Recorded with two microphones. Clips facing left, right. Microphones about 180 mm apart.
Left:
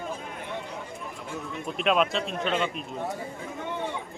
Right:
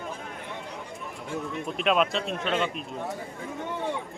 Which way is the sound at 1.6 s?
Centre (ahead or behind).